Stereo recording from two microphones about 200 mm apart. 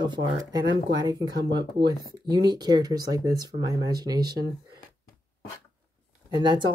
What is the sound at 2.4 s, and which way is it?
Speech, 20° right (ahead or behind).